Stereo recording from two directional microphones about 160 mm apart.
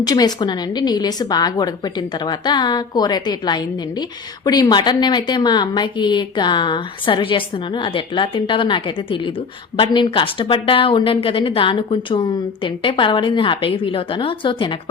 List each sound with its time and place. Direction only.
0.0 s a woman's voice: 25° left (ahead or behind)